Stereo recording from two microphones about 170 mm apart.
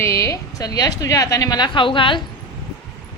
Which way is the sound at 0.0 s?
15° left (ahead or behind).